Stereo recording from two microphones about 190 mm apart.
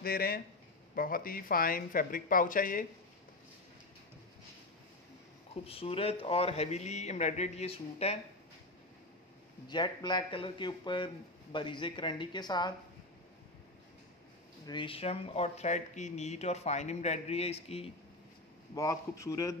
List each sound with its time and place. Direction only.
0.0 s speech: 50° left (ahead or behind)
5.5 s speech: 30° left (ahead or behind)
9.7 s speech: 25° left (ahead or behind)
14.7 s speech: 25° left (ahead or behind)
18.8 s a man's voice: 15° left (ahead or behind)